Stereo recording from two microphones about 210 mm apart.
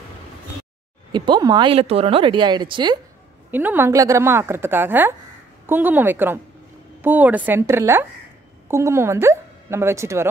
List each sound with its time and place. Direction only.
1.1 s speech: 20° right (ahead or behind)
3.5 s a woman's voice: 10° right (ahead or behind)